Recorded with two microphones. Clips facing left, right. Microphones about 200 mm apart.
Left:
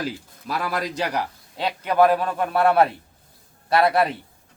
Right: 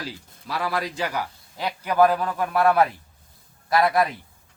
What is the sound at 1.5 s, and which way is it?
A man's voice, 25° left (ahead or behind).